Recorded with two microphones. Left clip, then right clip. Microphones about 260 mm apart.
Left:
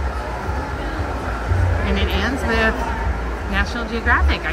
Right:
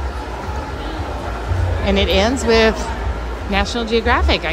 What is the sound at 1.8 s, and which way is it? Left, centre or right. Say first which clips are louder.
Speech: right 8 dB; centre.